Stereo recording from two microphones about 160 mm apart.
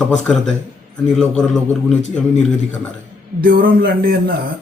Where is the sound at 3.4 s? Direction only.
65° right (ahead or behind).